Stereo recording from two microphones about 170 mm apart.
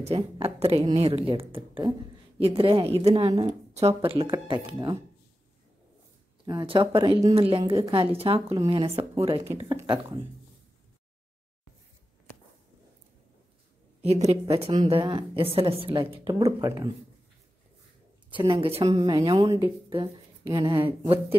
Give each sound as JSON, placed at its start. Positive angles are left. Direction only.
{"t": 0.0, "sound": "a woman's voice", "side_deg": -35}
{"t": 6.4, "sound": "a woman's voice", "side_deg": -25}
{"t": 14.0, "sound": "a woman's voice", "side_deg": -40}
{"t": 16.6, "sound": "speech", "side_deg": -20}
{"t": 18.3, "sound": "a woman's voice", "side_deg": -30}
{"t": 19.0, "sound": "speech", "side_deg": -25}
{"t": 20.5, "sound": "speech", "side_deg": -25}